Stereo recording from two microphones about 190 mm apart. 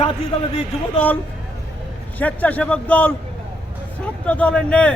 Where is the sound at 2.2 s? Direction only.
10° left (ahead or behind).